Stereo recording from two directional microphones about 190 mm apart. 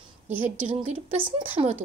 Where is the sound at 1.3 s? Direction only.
30° right (ahead or behind).